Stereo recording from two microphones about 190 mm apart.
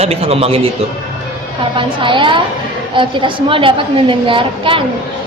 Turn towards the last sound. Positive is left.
turn(degrees=-25)  # may be behind; listen again after turning